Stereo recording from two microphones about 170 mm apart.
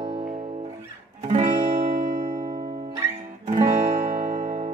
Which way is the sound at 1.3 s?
40° right (ahead or behind).